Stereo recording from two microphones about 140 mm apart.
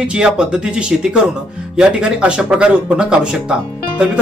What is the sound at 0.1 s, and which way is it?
Speech, 5° right (ahead or behind).